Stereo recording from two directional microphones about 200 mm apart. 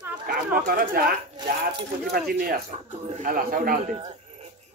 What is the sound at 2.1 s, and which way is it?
Speech, 50° right (ahead or behind).